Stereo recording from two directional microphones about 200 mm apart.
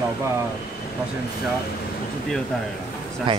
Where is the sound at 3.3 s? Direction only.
25° right (ahead or behind).